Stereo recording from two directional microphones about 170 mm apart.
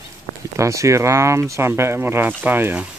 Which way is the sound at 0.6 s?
20° right (ahead or behind).